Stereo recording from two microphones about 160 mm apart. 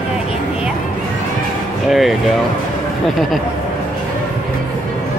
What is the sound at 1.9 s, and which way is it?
Speech, centre (ahead or behind).